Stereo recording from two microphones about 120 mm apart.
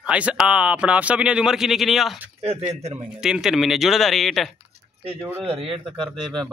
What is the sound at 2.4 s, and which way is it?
Speech, 60° right (ahead or behind).